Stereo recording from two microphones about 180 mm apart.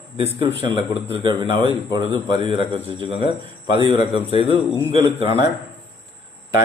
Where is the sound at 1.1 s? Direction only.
25° right (ahead or behind).